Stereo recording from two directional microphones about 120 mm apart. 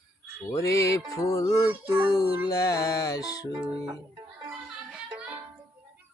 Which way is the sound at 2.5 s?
30° left (ahead or behind).